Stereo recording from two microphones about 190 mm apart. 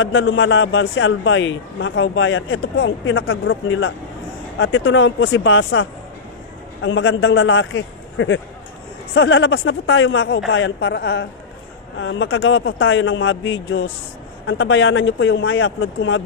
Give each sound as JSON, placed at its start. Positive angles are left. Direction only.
{"t": 0.0, "sound": "a man's voice", "side_deg": 90}
{"t": 10.5, "sound": "a man's voice", "side_deg": 70}
{"t": 12.0, "sound": "a man's voice", "side_deg": 85}